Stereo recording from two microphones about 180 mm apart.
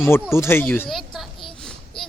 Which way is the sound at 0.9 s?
Centre (ahead or behind).